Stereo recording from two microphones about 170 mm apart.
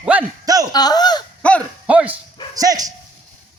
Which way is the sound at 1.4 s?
5° left (ahead or behind).